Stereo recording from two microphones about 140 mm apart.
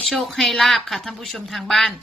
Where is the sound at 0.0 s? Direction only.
Centre (ahead or behind).